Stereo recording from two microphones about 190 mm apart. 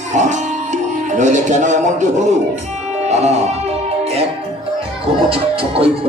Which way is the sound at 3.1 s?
35° right (ahead or behind).